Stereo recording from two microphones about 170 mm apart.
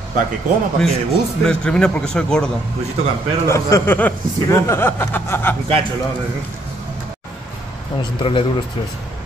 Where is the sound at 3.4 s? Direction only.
15° left (ahead or behind).